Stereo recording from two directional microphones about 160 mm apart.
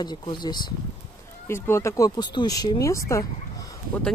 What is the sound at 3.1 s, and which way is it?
Dog, 20° left (ahead or behind).